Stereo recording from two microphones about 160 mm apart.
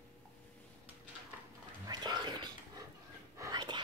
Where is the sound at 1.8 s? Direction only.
25° right (ahead or behind).